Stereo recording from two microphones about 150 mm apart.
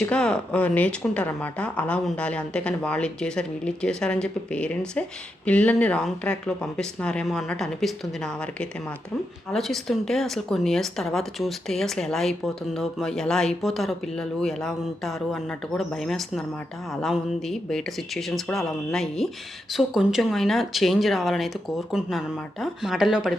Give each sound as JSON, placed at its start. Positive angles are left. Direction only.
{"t": 0.0, "sound": "speech", "side_deg": 5}